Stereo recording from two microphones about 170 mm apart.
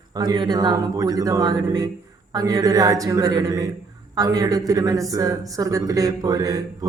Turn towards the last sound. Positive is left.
turn(degrees=-20)  # may be behind; listen again after turning